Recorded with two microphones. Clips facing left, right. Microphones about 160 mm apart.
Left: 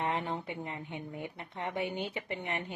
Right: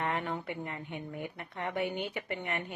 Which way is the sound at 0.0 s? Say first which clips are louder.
Even; 20° left (ahead or behind).